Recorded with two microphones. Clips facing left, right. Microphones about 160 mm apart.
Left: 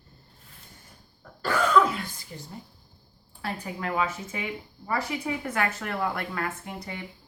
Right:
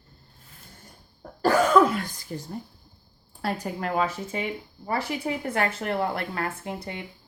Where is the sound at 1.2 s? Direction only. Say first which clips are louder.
Right 5 dB; 40° right (ahead or behind).